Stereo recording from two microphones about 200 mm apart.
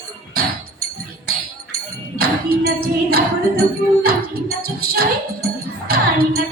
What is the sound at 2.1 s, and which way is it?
Music, 50° right (ahead or behind).